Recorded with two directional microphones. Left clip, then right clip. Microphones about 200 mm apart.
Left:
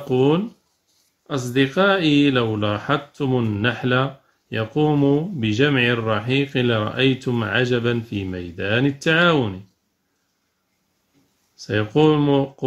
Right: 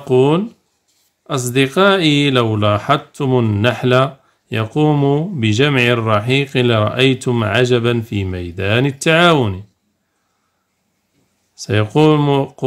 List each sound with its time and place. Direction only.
0.1 s speech: 40° right (ahead or behind)
11.5 s speech: 40° right (ahead or behind)